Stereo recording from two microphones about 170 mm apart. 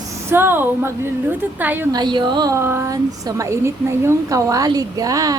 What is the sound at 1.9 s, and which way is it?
A woman's voice, 25° right (ahead or behind).